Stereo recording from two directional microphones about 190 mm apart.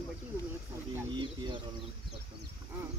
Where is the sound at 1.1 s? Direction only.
25° right (ahead or behind).